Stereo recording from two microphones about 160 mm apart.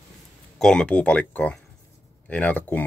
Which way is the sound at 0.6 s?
5° left (ahead or behind).